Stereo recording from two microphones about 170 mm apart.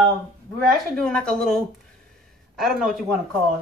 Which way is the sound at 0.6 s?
5° left (ahead or behind).